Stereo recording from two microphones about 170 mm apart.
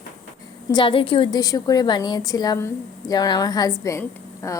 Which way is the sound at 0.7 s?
30° left (ahead or behind).